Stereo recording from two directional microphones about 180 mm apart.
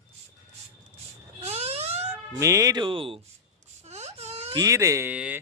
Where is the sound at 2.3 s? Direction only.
15° right (ahead or behind).